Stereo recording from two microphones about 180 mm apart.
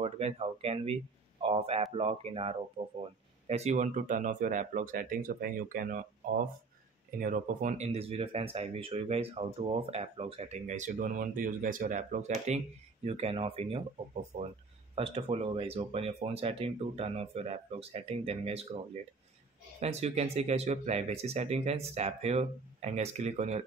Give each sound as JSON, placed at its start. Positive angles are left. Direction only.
{"t": 0.0, "sound": "speech", "side_deg": -35}
{"t": 19.8, "sound": "speech", "side_deg": -35}